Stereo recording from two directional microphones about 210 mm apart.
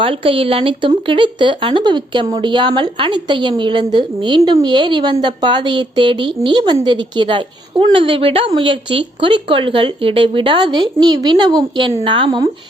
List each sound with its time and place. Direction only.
0.0 s speech: 25° right (ahead or behind)